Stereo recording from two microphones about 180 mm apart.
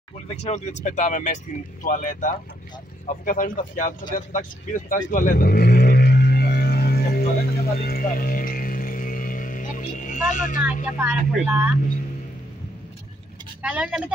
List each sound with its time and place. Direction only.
0.4 s speech: 40° left (ahead or behind)
4.3 s vehicle: 45° left (ahead or behind)
10.3 s speech: 45° left (ahead or behind)
11.0 s speech: 10° right (ahead or behind)
13.6 s speech: 5° right (ahead or behind)